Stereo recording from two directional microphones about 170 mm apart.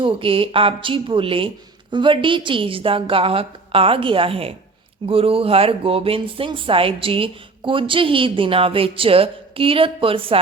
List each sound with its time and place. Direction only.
0.0 s speech: 30° right (ahead or behind)